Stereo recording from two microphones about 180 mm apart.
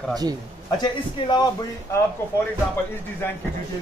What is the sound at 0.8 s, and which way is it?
Speech, 25° left (ahead or behind).